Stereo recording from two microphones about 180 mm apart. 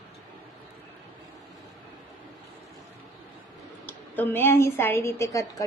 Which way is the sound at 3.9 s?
10° left (ahead or behind).